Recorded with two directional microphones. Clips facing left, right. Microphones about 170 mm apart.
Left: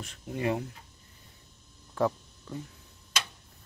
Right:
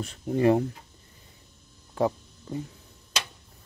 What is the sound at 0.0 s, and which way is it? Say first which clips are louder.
Speech: right 9 dB; 40° right (ahead or behind).